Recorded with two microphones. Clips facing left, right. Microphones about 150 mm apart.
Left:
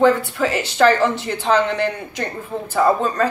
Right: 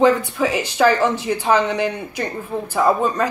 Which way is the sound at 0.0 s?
15° right (ahead or behind).